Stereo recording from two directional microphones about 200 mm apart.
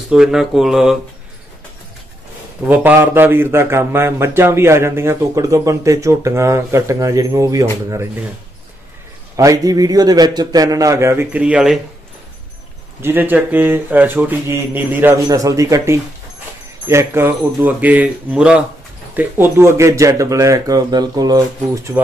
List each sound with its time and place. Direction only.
0.1 s speech: 5° right (ahead or behind)
2.6 s speech: 10° right (ahead or behind)
9.4 s speech: 15° right (ahead or behind)
13.0 s speech: 10° right (ahead or behind)